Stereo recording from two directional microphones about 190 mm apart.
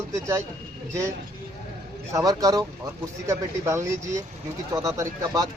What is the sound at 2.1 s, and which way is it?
Speech, 20° right (ahead or behind).